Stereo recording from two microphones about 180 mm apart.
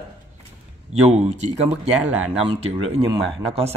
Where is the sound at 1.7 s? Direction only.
5° right (ahead or behind).